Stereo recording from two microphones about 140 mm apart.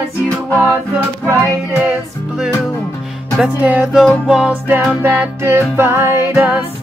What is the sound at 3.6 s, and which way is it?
Music, 10° right (ahead or behind).